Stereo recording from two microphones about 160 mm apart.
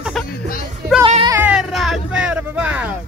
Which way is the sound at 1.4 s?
5° right (ahead or behind).